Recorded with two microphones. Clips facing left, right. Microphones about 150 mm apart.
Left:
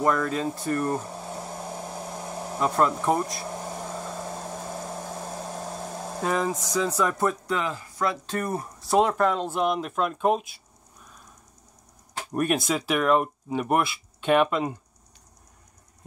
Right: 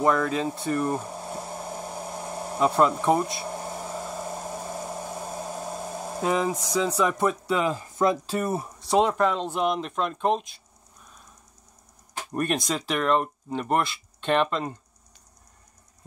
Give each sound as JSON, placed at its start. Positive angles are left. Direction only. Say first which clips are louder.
{"t": 0.0, "sound": "speech", "louder": "right 1 dB", "side_deg": -5}
{"t": 0.6, "sound": "a sound", "louder": "even", "side_deg": -5}
{"t": 3.0, "sound": "speech", "louder": "right 2 dB", "side_deg": 0}
{"t": 3.6, "sound": "hair dryer", "louder": "even", "side_deg": -10}
{"t": 7.5, "sound": "speech", "louder": "right 4 dB", "side_deg": -15}
{"t": 8.3, "sound": "speech", "louder": "right 2 dB", "side_deg": -5}
{"t": 12.3, "sound": "speech", "louder": "left 2 dB", "side_deg": 5}